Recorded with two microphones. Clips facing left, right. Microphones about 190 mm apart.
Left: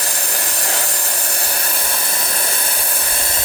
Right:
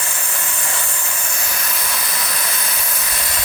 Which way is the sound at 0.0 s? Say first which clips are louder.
Left 3 dB; 35° left (ahead or behind).